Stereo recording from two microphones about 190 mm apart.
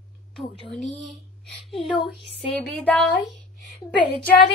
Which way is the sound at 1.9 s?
25° left (ahead or behind).